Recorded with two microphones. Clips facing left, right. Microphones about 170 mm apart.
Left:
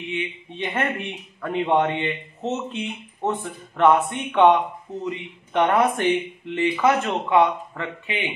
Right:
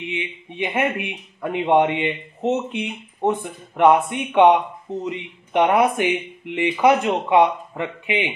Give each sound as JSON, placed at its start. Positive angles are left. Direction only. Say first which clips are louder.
{"t": 0.1, "sound": "speech", "louder": "even", "side_deg": -15}